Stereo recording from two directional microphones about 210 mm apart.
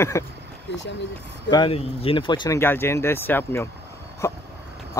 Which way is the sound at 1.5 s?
25° left (ahead or behind).